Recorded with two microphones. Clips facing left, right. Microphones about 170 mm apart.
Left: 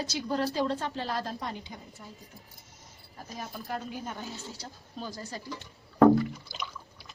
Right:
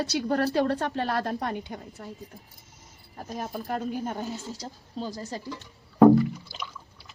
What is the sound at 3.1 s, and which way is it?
Speech, 50° right (ahead or behind).